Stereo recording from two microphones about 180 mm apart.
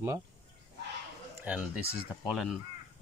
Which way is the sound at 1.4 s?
5° right (ahead or behind).